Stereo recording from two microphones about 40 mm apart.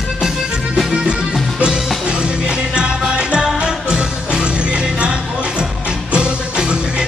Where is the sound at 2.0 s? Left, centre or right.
Right.